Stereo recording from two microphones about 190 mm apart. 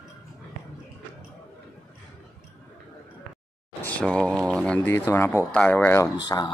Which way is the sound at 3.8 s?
5° left (ahead or behind).